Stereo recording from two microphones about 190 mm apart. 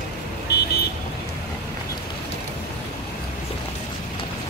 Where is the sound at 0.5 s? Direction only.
60° left (ahead or behind).